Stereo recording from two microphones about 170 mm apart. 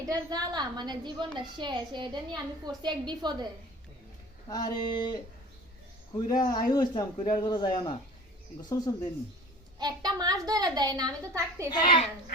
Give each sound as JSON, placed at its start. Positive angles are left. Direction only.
{"t": 0.1, "sound": "a child's voice", "side_deg": -25}
{"t": 4.4, "sound": "speech", "side_deg": 25}
{"t": 6.1, "sound": "speech", "side_deg": 25}
{"t": 9.7, "sound": "a child's voice", "side_deg": -25}
{"t": 11.7, "sound": "speech", "side_deg": 25}